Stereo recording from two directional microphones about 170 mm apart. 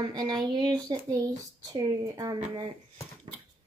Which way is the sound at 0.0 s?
25° right (ahead or behind).